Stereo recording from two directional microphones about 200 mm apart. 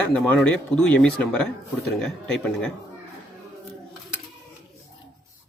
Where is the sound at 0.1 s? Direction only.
5° left (ahead or behind).